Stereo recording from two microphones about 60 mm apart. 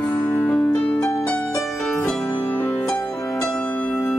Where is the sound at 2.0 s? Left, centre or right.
Centre.